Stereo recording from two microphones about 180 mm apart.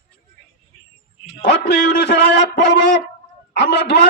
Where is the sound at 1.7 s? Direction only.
70° left (ahead or behind).